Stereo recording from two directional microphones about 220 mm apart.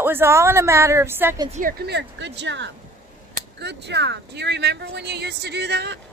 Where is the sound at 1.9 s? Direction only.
50° right (ahead or behind).